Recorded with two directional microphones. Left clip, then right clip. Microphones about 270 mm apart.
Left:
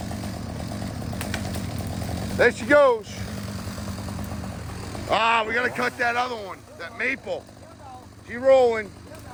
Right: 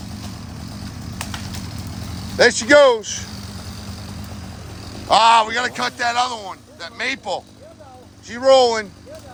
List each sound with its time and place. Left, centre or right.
2.4 s speech: right
5.0 s a man's voice: centre